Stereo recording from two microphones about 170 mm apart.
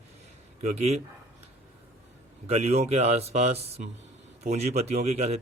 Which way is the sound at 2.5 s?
40° right (ahead or behind).